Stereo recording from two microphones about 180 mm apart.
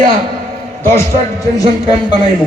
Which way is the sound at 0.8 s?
15° left (ahead or behind).